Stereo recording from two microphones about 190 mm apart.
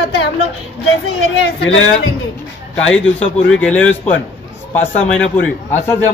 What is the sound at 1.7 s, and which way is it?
Speech, 90° left.